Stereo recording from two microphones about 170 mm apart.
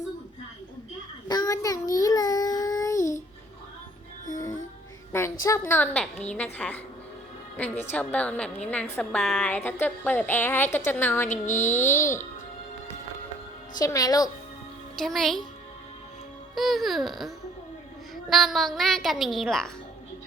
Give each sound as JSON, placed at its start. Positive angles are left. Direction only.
{"t": 1.3, "sound": "child singing", "side_deg": 20}
{"t": 4.4, "sound": "music", "side_deg": 20}
{"t": 5.1, "sound": "a woman's voice", "side_deg": 15}
{"t": 11.3, "sound": "a sound", "side_deg": 45}
{"t": 11.7, "sound": "a woman's voice", "side_deg": 15}
{"t": 13.7, "sound": "a woman's voice", "side_deg": 20}
{"t": 14.9, "sound": "a woman's voice", "side_deg": 0}
{"t": 16.6, "sound": "a woman's voice", "side_deg": 0}